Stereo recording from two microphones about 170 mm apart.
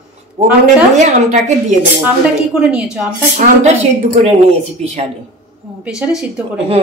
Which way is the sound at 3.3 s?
45° right (ahead or behind).